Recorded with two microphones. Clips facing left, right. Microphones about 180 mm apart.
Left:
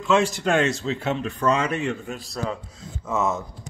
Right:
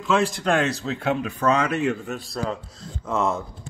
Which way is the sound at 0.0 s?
Centre (ahead or behind).